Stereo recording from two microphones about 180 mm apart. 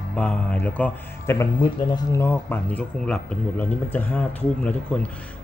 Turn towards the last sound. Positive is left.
turn(degrees=5)  # may be behind; listen again after turning